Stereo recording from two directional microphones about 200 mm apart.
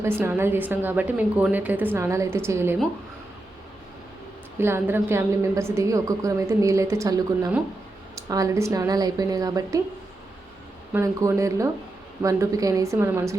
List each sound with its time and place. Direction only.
0.0 s a woman's voice: 10° right (ahead or behind)
4.5 s a woman's voice: 10° right (ahead or behind)
10.9 s a woman's voice: 15° right (ahead or behind)